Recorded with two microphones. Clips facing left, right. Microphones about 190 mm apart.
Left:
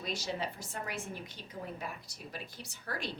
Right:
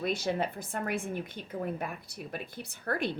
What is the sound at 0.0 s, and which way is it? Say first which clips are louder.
A woman's voice: right 7 dB; 55° right (ahead or behind).